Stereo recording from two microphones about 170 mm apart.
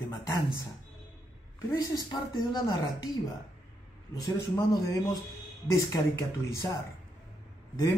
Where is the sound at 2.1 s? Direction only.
25° left (ahead or behind).